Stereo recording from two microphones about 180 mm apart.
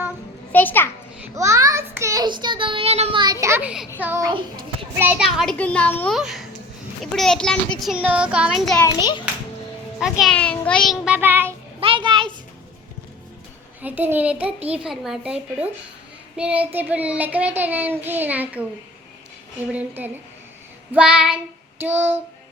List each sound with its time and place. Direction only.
0.5 s a child's voice: 10° left (ahead or behind)
1.2 s child singing: 15° right (ahead or behind)
3.4 s child singing: 10° right (ahead or behind)
4.9 s a child's voice: 10° right (ahead or behind); by 6.1 s 10° left (ahead or behind)
6.1 s a child's voice: centre (ahead or behind)
8.8 s a child's voice: 25° left (ahead or behind)
10.0 s a child's voice: centre (ahead or behind)
11.8 s a child's voice: 30° right (ahead or behind)
13.8 s child singing: 10° right (ahead or behind)
14.7 s a child's voice: 5° right (ahead or behind)
16.4 s child singing: 10° right (ahead or behind)
20.9 s child singing: 5° right (ahead or behind)